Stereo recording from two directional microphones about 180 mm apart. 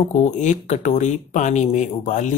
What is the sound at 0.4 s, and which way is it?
Speech, 40° left (ahead or behind).